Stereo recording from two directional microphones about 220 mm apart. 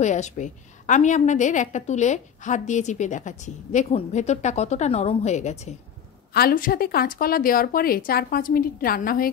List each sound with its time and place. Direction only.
0.0 s a woman's voice: 35° left (ahead or behind)
6.3 s a woman's voice: 40° left (ahead or behind)